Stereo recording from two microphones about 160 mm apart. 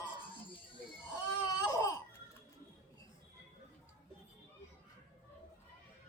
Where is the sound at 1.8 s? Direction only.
20° left (ahead or behind).